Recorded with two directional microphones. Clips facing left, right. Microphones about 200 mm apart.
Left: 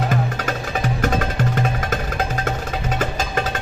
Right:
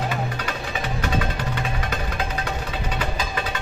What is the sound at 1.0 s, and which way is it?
Music, 45° left (ahead or behind).